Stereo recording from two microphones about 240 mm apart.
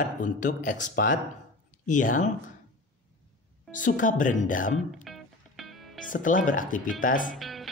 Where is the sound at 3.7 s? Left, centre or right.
Left.